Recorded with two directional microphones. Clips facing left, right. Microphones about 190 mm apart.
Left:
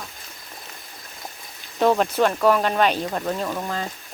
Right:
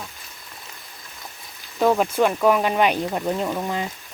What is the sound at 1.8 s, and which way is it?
Speech, 5° right (ahead or behind).